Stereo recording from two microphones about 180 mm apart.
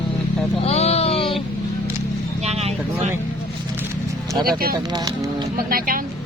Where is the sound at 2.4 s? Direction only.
35° right (ahead or behind).